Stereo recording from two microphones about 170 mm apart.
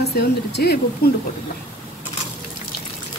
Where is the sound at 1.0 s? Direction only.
65° left (ahead or behind).